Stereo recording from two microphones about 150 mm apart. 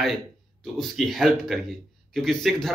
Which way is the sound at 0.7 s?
Centre (ahead or behind).